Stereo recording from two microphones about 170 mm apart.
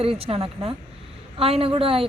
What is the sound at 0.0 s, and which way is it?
A woman's voice, 35° right (ahead or behind).